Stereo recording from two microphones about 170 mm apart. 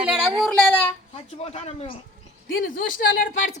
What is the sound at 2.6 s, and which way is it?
Speech, 55° left (ahead or behind).